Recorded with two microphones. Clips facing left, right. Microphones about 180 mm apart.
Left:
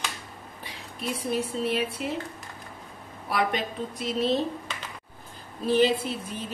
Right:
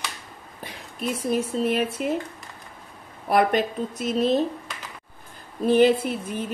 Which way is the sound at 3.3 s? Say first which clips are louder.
Right 7 dB; 50° right (ahead or behind).